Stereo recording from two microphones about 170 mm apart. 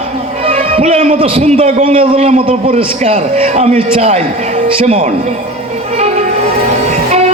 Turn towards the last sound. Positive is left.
turn(degrees=-40)  # may be behind; listen again after turning